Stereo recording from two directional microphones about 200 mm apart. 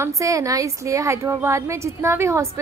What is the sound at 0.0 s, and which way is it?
A woman's voice, 15° right (ahead or behind).